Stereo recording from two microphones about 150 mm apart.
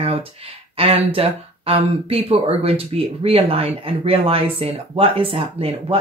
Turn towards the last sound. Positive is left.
turn(degrees=-35)  # may be behind; listen again after turning